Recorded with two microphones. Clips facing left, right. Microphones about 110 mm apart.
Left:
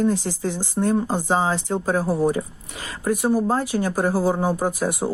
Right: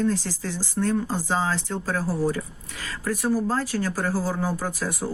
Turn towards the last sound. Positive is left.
turn(degrees=20)  # may be behind; listen again after turning